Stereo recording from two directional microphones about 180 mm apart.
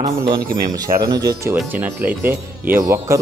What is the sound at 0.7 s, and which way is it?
Speech, 20° right (ahead or behind).